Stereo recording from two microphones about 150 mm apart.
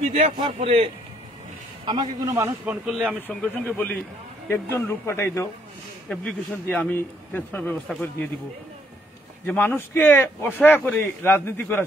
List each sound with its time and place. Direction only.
0.0 s a man's voice: 45° right (ahead or behind)
1.9 s a man's voice: 30° right (ahead or behind)
2.3 s speech: 15° right (ahead or behind)
3.2 s speech: 10° left (ahead or behind)
6.0 s speech: 5° left (ahead or behind)
9.5 s speech: 10° left (ahead or behind)